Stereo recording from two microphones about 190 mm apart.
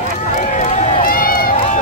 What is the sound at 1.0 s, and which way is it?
Run, 45° left (ahead or behind).